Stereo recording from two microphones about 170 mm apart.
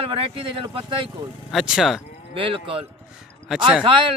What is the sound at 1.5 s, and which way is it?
Speech, centre (ahead or behind).